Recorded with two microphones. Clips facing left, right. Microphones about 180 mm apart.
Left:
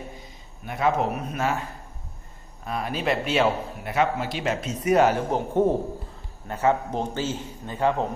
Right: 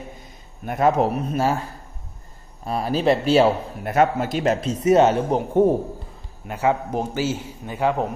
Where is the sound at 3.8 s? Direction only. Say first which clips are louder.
Right 5 dB; 50° right (ahead or behind); by 5.4 s 25° right (ahead or behind).